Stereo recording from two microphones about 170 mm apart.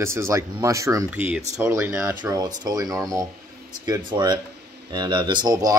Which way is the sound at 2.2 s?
20° right (ahead or behind).